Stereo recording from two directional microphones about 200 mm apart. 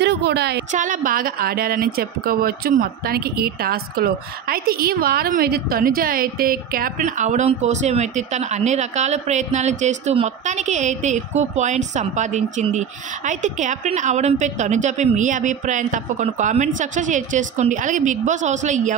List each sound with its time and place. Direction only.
0.0 s a woman's voice: 55° right (ahead or behind)
0.7 s a woman's voice: 40° right (ahead or behind)